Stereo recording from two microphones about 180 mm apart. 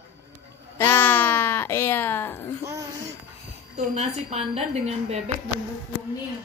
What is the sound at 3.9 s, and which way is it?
A woman's voice, 35° right (ahead or behind).